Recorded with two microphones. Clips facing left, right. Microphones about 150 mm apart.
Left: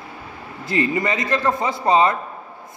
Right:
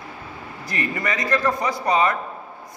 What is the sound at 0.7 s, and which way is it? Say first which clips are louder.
A man's voice: left 6 dB; 25° left (ahead or behind).